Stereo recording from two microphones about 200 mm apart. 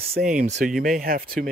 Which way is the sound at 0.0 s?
45° right (ahead or behind).